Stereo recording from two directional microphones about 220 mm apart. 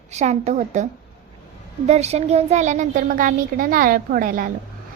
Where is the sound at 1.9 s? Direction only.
30° right (ahead or behind).